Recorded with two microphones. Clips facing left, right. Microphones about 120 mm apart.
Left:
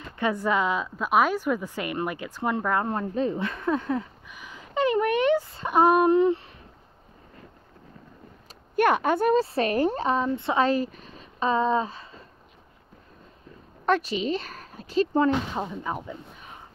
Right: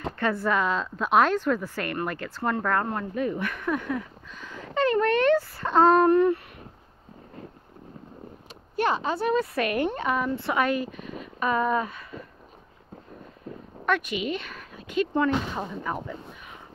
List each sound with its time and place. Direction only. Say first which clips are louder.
0.2 s a woman's voice: left 1 dB; 15° left (ahead or behind)
4.3 s a sound: right 4 dB; 15° left (ahead or behind)
4.7 s speech: even; 15° left (ahead or behind)
8.7 s speech: left 4 dB; 55° left (ahead or behind)
9.3 s speech: left 2 dB; 30° left (ahead or behind)
13.8 s a woman's voice: left 2 dB; 35° left (ahead or behind)